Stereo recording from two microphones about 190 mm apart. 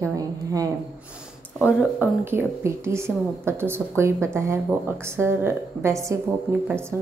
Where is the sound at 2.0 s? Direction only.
10° right (ahead or behind).